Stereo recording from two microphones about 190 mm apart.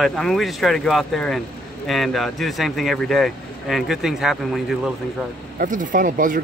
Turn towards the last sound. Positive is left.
turn(degrees=-45)  # may be behind; listen again after turning